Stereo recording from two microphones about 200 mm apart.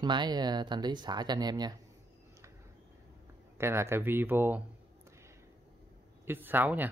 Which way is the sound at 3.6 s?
15° right (ahead or behind).